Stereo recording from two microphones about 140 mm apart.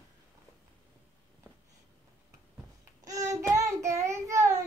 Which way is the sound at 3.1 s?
25° right (ahead or behind).